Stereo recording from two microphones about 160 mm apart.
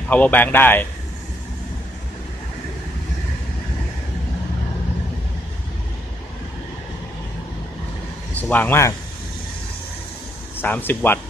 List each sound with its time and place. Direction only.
0.1 s speech: 10° left (ahead or behind)
8.4 s speech: 10° left (ahead or behind)
10.6 s speech: 10° left (ahead or behind)